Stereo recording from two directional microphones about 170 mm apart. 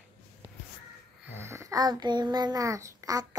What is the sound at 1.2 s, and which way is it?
A child's voice, 15° right (ahead or behind).